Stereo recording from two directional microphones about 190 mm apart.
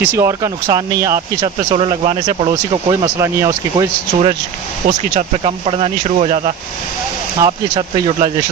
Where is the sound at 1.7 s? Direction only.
30° right (ahead or behind).